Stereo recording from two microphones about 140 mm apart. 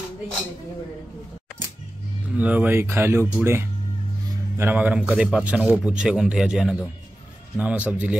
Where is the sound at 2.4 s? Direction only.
10° right (ahead or behind).